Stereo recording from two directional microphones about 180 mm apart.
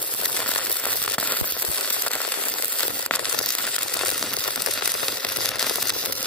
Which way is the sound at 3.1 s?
5° left (ahead or behind).